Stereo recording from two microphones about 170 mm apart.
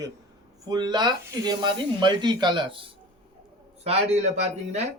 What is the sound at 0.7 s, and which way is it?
Speech, 25° right (ahead or behind).